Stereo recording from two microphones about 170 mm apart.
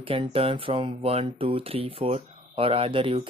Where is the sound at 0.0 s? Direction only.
30° right (ahead or behind).